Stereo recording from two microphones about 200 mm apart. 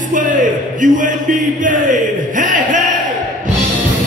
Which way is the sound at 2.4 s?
40° right (ahead or behind).